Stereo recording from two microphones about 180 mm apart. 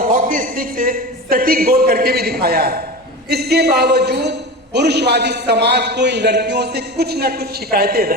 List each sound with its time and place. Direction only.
0.0 s a man's voice: 50° right (ahead or behind)